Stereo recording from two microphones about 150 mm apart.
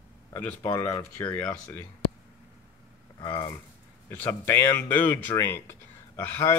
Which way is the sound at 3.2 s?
20° left (ahead or behind).